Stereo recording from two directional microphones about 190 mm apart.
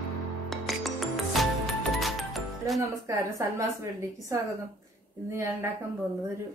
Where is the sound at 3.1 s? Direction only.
15° right (ahead or behind).